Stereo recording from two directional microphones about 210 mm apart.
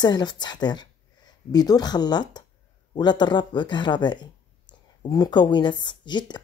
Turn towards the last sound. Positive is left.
turn(degrees=20)  # may be behind; listen again after turning